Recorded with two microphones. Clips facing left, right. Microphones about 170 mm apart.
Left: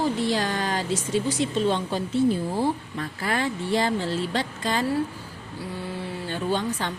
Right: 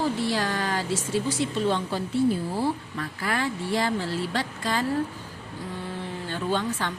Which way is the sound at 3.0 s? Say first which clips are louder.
Left 1 dB; 30° left (ahead or behind).